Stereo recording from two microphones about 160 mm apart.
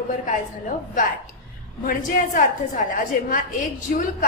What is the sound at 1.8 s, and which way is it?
A woman's voice, 60° left (ahead or behind).